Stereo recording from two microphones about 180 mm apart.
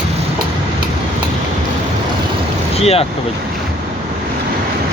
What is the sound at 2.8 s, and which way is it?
Speech, 35° left (ahead or behind).